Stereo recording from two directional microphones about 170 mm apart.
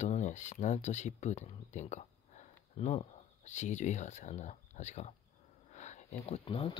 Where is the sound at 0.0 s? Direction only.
45° left (ahead or behind).